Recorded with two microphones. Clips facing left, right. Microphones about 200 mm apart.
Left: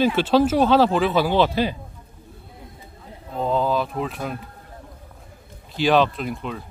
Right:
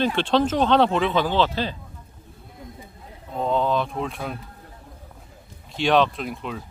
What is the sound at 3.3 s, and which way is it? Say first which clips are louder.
Speech: left 1 dB; centre (ahead or behind).